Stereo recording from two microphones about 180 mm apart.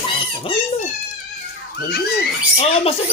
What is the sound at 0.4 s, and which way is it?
Dog, 35° left (ahead or behind).